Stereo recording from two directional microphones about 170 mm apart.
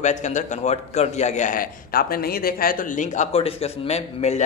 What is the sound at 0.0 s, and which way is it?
A man's voice, 45° left (ahead or behind).